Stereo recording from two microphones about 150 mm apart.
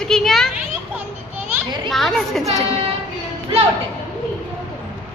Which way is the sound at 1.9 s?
Centre (ahead or behind).